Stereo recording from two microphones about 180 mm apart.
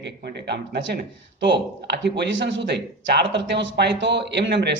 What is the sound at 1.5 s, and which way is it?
A man's voice, 70° right (ahead or behind).